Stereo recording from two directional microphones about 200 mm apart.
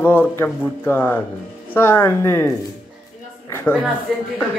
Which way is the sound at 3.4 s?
10° left (ahead or behind).